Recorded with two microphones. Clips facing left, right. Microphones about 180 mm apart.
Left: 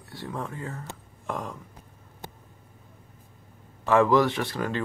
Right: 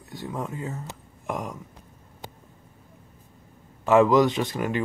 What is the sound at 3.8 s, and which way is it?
Speech, 20° right (ahead or behind).